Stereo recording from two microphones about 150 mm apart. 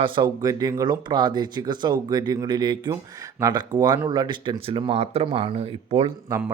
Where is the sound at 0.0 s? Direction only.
30° right (ahead or behind); by 6.1 s 45° right (ahead or behind).